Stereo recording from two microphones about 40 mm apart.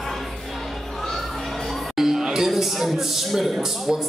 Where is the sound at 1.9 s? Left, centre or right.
Centre.